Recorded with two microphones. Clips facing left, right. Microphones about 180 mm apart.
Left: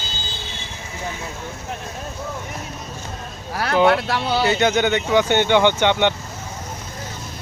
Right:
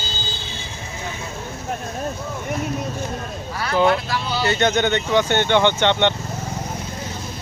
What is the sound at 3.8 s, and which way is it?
Speech, 65° left (ahead or behind).